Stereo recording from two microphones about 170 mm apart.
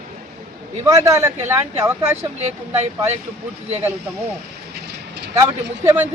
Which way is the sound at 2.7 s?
40° right (ahead or behind).